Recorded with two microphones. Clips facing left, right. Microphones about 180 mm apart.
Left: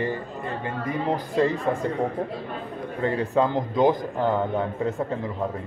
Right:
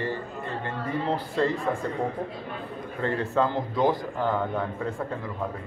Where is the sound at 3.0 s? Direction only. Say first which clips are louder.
Left 3 dB; 15° left (ahead or behind).